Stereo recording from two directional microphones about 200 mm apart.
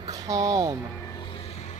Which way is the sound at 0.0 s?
15° right (ahead or behind).